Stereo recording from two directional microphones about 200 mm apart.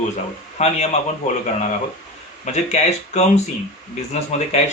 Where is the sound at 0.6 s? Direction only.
35° left (ahead or behind).